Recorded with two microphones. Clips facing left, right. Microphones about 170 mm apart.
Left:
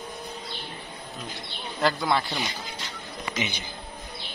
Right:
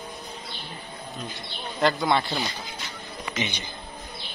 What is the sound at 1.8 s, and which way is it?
Speech, centre (ahead or behind).